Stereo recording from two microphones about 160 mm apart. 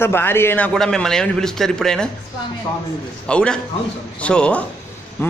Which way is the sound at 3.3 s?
5° left (ahead or behind).